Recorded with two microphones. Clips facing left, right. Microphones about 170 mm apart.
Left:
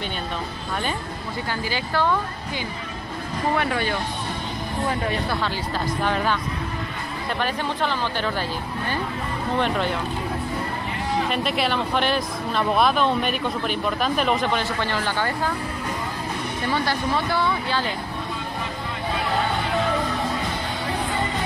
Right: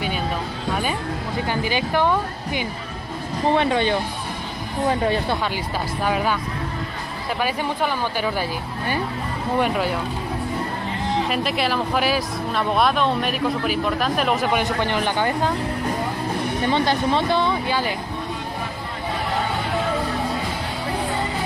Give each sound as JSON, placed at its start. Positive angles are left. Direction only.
{"t": 1.5, "sound": "speech", "side_deg": -20}
{"t": 6.0, "sound": "speech", "side_deg": -10}
{"t": 7.3, "sound": "speech", "side_deg": -10}
{"t": 11.2, "sound": "speech", "side_deg": 0}
{"t": 14.5, "sound": "speech", "side_deg": -15}
{"t": 16.6, "sound": "speech", "side_deg": -20}